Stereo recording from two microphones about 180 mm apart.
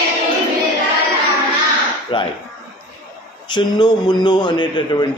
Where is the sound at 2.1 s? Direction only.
25° left (ahead or behind).